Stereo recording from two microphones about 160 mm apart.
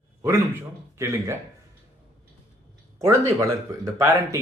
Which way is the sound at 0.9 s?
15° right (ahead or behind).